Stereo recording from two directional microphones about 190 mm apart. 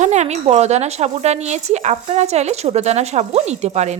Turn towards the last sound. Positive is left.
turn(degrees=-35)  # may be behind; listen again after turning